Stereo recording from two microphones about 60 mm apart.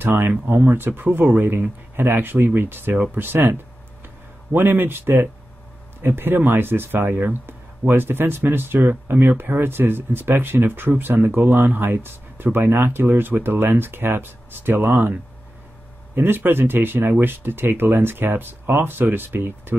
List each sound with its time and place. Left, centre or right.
0.0 s speech: right
16.2 s speech: right